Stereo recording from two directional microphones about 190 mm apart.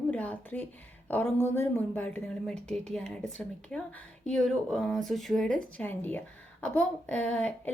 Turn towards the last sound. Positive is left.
turn(degrees=10)  # may be behind; listen again after turning